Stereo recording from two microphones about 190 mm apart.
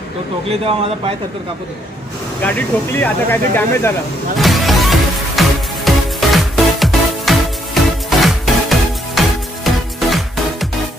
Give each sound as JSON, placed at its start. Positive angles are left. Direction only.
{"t": 0.5, "sound": "speech", "side_deg": -30}
{"t": 2.4, "sound": "speech", "side_deg": 10}
{"t": 4.4, "sound": "music", "side_deg": 0}